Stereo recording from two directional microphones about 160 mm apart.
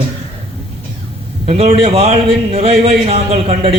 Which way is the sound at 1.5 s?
35° right (ahead or behind).